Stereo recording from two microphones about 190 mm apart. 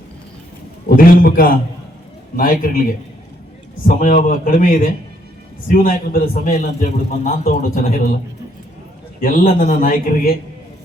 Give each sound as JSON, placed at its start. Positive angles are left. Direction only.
{"t": 0.9, "sound": "a sound", "side_deg": 50}
{"t": 2.3, "sound": "a man's voice", "side_deg": 45}
{"t": 3.8, "sound": "a man's voice", "side_deg": 45}
{"t": 9.2, "sound": "a man's voice", "side_deg": 50}